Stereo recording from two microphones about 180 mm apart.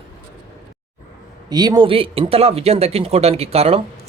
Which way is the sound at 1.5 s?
20° right (ahead or behind).